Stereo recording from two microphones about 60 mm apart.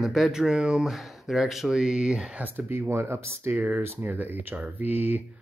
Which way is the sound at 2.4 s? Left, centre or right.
Right.